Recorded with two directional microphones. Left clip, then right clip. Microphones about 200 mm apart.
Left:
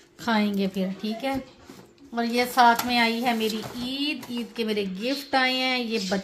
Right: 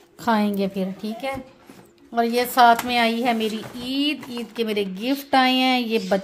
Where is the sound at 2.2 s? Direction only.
65° right (ahead or behind).